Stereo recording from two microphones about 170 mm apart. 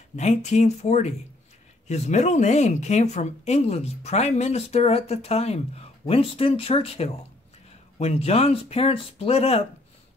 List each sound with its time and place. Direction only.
0.1 s speech: 40° left (ahead or behind)